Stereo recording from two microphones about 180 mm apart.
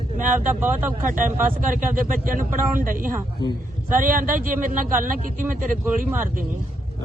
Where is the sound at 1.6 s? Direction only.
50° right (ahead or behind).